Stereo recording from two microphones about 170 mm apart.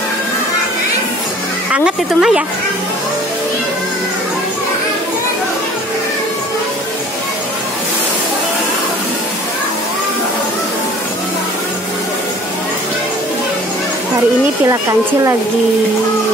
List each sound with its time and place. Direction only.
1.7 s speech: 5° right (ahead or behind)
14.7 s speech: 15° right (ahead or behind)